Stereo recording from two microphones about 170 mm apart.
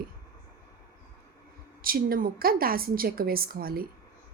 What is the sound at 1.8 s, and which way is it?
A woman's voice, 60° right (ahead or behind).